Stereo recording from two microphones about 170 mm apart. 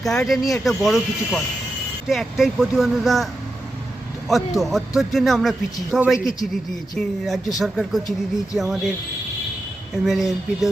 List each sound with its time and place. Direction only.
0.0 s speech: centre (ahead or behind)
4.3 s speech: centre (ahead or behind)
10.1 s speech: centre (ahead or behind)